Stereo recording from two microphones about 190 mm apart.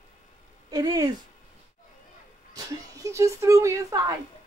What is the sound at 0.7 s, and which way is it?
Speech, 20° right (ahead or behind).